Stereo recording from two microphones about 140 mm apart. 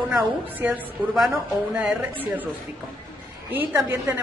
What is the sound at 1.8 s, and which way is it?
Speech, 10° right (ahead or behind).